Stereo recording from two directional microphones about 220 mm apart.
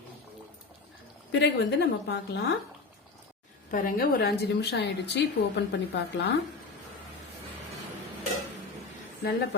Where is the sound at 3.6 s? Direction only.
40° left (ahead or behind).